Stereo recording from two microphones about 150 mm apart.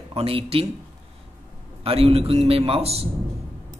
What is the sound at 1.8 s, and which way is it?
Speech, 40° right (ahead or behind).